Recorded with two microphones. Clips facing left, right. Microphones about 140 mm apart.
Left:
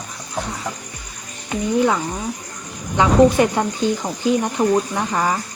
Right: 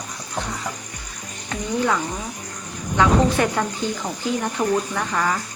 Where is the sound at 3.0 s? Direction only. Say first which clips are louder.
Left 4 dB; 20° left (ahead or behind).